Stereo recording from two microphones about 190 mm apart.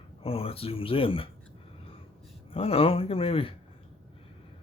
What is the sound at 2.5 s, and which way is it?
Speech, 30° left (ahead or behind).